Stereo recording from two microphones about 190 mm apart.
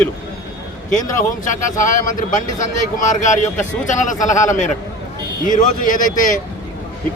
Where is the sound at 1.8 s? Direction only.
45° left (ahead or behind).